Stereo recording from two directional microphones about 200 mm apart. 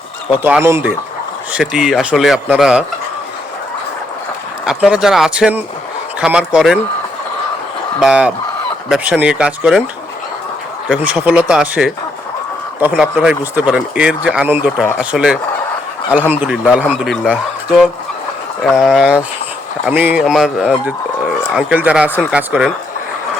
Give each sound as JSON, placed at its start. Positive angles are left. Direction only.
{"t": 0.4, "sound": "speech", "side_deg": -10}
{"t": 4.6, "sound": "speech", "side_deg": -5}
{"t": 7.9, "sound": "speech", "side_deg": -5}
{"t": 10.8, "sound": "speech", "side_deg": -5}
{"t": 13.0, "sound": "speech", "side_deg": -5}